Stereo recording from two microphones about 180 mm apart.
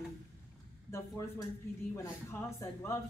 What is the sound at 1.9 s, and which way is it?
Speech, 15° left (ahead or behind).